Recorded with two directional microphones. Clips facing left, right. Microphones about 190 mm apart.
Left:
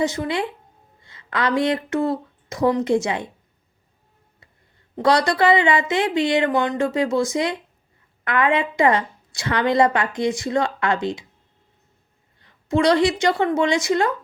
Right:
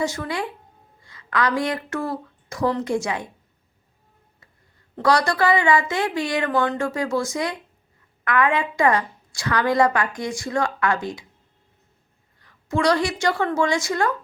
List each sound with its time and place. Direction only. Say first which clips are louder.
0.0 s a woman's voice: left 3 dB; 20° left (ahead or behind)
4.9 s a woman's voice: left 2 dB; 20° left (ahead or behind)
12.4 s a woman's voice: left 3 dB; 25° left (ahead or behind)